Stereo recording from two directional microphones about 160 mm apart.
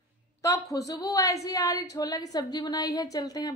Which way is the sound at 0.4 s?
20° left (ahead or behind).